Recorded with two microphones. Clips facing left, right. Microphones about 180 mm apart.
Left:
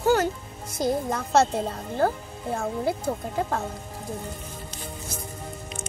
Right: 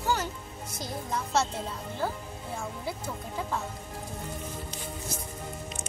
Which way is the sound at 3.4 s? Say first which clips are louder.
Left 4 dB; 60° left (ahead or behind).